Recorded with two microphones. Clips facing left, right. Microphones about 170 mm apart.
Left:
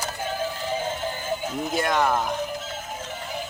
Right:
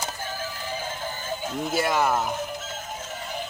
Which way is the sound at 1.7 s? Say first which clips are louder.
Even; 5° right (ahead or behind).